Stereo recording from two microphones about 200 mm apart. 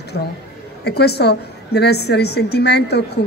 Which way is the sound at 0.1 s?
55° left (ahead or behind).